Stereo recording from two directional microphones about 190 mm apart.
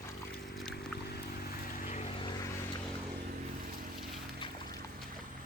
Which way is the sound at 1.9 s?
35° left (ahead or behind).